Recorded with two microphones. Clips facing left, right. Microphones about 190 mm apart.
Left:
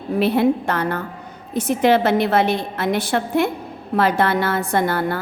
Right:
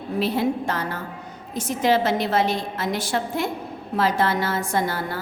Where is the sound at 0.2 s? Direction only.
60° left (ahead or behind).